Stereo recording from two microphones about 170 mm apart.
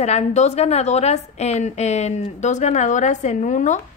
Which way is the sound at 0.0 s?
40° left (ahead or behind).